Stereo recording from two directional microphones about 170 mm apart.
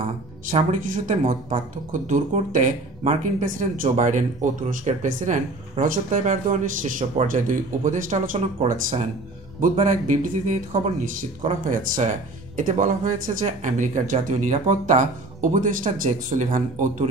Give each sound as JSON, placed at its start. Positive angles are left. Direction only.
{"t": 0.5, "sound": "speech", "side_deg": -50}